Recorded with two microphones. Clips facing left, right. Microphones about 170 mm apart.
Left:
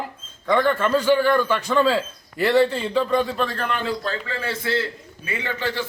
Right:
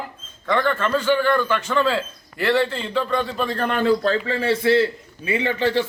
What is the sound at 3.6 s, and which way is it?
Speech, 45° right (ahead or behind).